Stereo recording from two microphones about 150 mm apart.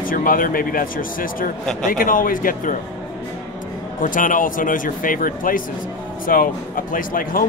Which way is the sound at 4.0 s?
65° left (ahead or behind).